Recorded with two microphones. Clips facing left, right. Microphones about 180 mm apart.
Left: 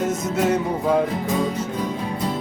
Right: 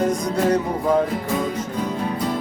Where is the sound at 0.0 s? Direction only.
5° left (ahead or behind).